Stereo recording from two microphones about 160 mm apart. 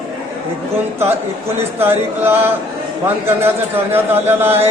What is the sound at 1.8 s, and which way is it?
Chant, 15° right (ahead or behind).